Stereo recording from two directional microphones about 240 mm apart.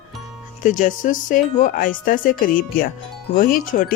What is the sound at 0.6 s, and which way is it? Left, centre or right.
Speech, left.